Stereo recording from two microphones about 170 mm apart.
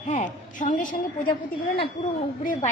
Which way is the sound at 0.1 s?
45° left (ahead or behind).